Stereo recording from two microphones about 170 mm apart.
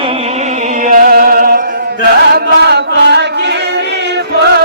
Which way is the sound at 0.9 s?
55° right (ahead or behind).